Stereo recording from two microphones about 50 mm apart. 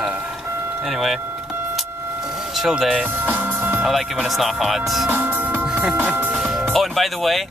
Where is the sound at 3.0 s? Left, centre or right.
Right.